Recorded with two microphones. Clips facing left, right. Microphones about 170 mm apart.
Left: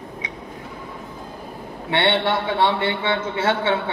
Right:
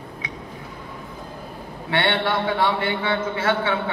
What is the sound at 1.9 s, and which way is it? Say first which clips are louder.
A man's voice: left 2 dB; 20° left (ahead or behind).